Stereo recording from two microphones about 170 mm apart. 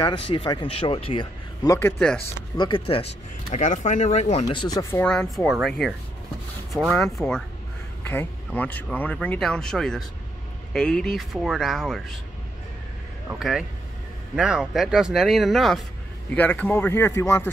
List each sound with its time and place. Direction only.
0.3 s speech: 30° left (ahead or behind)
1.8 s speech: 10° left (ahead or behind)
2.5 s speech: 25° left (ahead or behind)
3.5 s speech: 45° left (ahead or behind); by 4.8 s 25° left (ahead or behind)
4.9 s speech: 5° left (ahead or behind)
13.3 s speech: 5° right (ahead or behind); by 17.5 s 15° left (ahead or behind)